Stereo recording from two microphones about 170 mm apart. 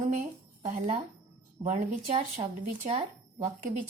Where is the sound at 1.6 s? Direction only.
45° right (ahead or behind).